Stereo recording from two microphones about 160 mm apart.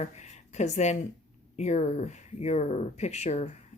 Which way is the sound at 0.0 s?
45° left (ahead or behind).